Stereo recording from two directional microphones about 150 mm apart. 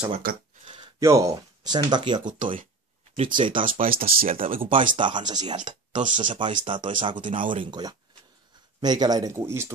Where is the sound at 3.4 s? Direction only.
35° right (ahead or behind).